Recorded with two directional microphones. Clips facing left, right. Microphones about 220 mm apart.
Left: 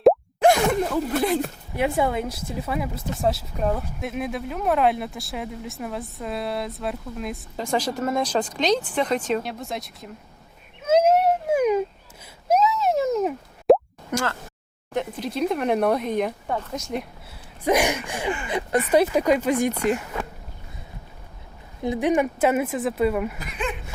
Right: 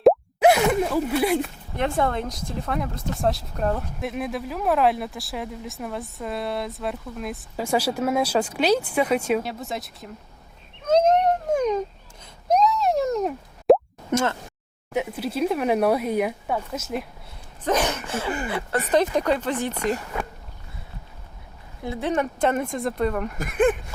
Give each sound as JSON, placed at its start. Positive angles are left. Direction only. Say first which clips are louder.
{"t": 0.0, "sound": "plop", "louder": "even", "side_deg": -5}
{"t": 1.7, "sound": "speech", "louder": "left 1 dB", "side_deg": 10}
{"t": 10.8, "sound": "a sound", "louder": "left 1 dB", "side_deg": 5}
{"t": 12.5, "sound": "plop", "louder": "even", "side_deg": 5}
{"t": 14.1, "sound": "speech", "louder": "right 3 dB", "side_deg": -25}
{"t": 14.9, "sound": "speech", "louder": "right 1 dB", "side_deg": -5}
{"t": 17.6, "sound": "speech", "louder": "left 2 dB", "side_deg": 10}
{"t": 21.8, "sound": "speech", "louder": "left 4 dB", "side_deg": 15}
{"t": 23.4, "sound": "speech", "louder": "right 10 dB", "side_deg": -50}